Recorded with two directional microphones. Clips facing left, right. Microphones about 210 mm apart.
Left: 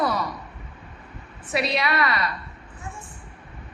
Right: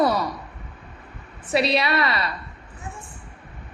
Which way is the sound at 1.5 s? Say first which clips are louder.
Right 3 dB; 30° right (ahead or behind).